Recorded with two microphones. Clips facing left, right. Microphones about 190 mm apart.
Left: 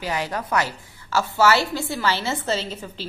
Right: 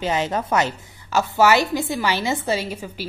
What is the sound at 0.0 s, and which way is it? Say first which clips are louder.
A woman's voice: right 4 dB; 25° right (ahead or behind).